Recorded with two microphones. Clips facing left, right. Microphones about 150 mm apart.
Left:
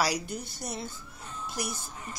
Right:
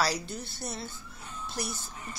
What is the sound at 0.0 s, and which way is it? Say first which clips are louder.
Speech: left 1 dB; 15° left (ahead or behind).